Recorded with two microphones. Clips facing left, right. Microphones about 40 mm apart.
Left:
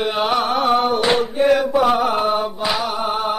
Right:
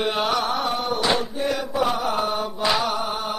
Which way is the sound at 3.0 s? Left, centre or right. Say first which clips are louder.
Left 6 dB; left.